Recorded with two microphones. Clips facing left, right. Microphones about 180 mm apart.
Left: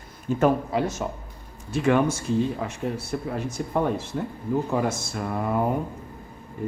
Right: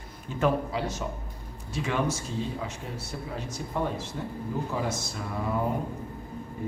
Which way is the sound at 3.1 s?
60° left (ahead or behind).